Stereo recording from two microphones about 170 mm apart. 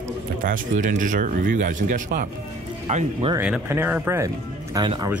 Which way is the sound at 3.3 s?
10° right (ahead or behind).